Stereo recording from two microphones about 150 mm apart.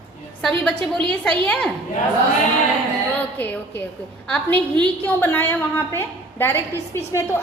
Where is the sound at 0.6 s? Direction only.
10° left (ahead or behind).